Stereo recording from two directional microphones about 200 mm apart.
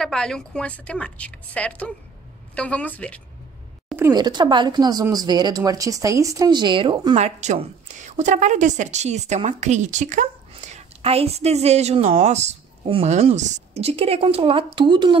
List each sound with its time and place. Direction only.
0.0 s a woman's voice: 5° left (ahead or behind)
3.9 s speech: 15° right (ahead or behind)
7.2 s a woman's voice: 35° right (ahead or behind)